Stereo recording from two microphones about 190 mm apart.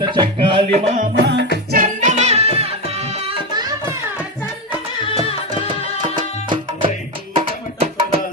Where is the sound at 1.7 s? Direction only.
45° right (ahead or behind).